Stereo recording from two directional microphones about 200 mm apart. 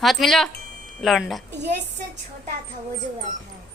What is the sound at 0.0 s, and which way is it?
Speech, centre (ahead or behind).